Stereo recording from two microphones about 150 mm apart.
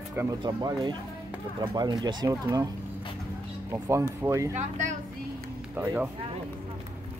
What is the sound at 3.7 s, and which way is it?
Speech, 20° right (ahead or behind).